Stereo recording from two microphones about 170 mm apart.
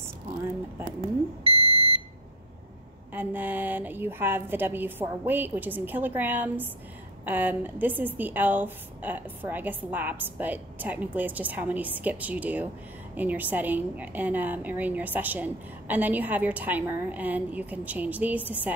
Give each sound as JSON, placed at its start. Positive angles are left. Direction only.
{"t": 1.5, "sound": "smoke detector", "side_deg": 25}
{"t": 3.1, "sound": "a woman's voice", "side_deg": -10}